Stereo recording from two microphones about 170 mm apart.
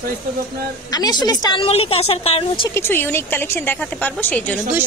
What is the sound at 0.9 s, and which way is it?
A woman's voice, 25° left (ahead or behind).